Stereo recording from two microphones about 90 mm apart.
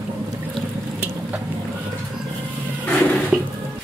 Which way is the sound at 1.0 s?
20° right (ahead or behind).